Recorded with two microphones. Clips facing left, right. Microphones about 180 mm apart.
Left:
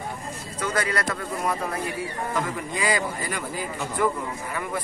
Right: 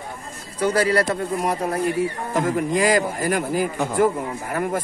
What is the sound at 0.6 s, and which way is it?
A man's voice, 35° right (ahead or behind).